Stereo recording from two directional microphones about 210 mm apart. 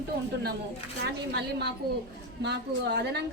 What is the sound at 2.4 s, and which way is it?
Speech, 55° right (ahead or behind).